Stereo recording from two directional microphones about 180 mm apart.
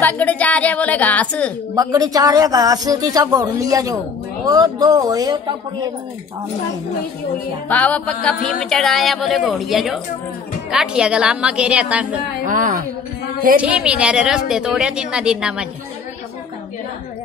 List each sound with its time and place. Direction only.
0.0 s a woman's voice: 10° left (ahead or behind)
1.8 s speech: 20° right (ahead or behind)
7.6 s a woman's voice: 10° left (ahead or behind)
12.4 s a woman's voice: 45° right (ahead or behind)
13.6 s a woman's voice: 5° right (ahead or behind)